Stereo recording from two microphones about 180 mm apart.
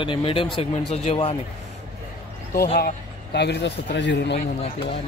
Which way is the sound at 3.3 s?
70° left (ahead or behind).